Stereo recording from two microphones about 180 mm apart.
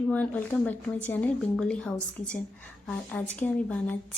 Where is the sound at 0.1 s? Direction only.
10° left (ahead or behind).